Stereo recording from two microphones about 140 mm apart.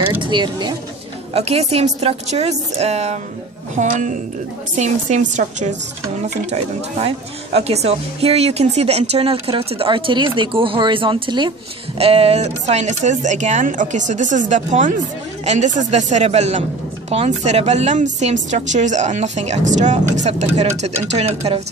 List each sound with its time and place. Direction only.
0.2 s speech: 35° right (ahead or behind)
1.3 s speech: 45° right (ahead or behind)
3.7 s speech: 65° right (ahead or behind); by 11.5 s 35° right (ahead or behind)
12.0 s speech: 45° right (ahead or behind)